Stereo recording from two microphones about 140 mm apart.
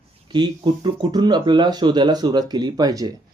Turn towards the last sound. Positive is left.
turn(degrees=-25)  # may be behind; listen again after turning